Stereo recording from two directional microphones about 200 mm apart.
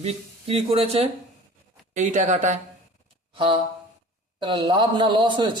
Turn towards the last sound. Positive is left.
turn(degrees=-25)  # may be behind; listen again after turning